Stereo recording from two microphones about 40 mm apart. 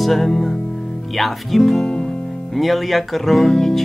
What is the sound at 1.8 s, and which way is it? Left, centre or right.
Music, left.